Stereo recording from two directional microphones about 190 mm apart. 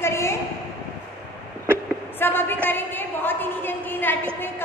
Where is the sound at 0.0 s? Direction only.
15° left (ahead or behind).